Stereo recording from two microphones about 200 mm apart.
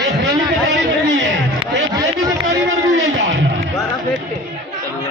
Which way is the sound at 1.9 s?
20° right (ahead or behind).